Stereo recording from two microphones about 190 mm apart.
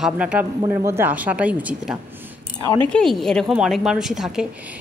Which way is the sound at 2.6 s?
25° left (ahead or behind).